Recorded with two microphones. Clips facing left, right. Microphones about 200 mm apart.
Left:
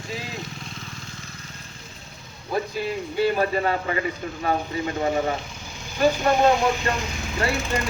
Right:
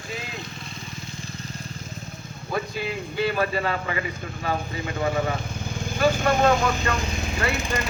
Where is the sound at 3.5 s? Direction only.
35° left (ahead or behind).